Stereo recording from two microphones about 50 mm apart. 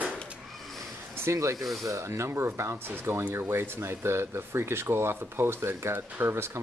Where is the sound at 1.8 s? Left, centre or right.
Right.